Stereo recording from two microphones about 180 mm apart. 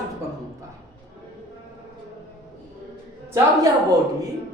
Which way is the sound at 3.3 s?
20° right (ahead or behind).